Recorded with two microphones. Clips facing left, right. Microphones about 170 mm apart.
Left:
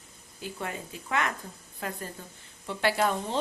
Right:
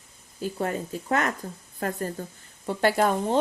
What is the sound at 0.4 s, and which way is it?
Speech, 40° right (ahead or behind).